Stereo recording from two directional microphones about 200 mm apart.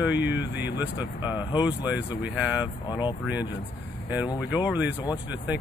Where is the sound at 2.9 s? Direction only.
20° left (ahead or behind).